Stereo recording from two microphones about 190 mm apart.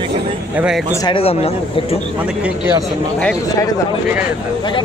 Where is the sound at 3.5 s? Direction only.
20° left (ahead or behind).